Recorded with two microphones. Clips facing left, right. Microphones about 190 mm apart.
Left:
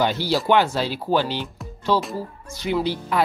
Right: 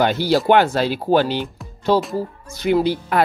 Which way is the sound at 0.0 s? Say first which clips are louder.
Right 4 dB; 55° right (ahead or behind).